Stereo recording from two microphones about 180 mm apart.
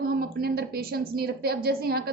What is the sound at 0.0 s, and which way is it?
A woman's voice, 55° right (ahead or behind).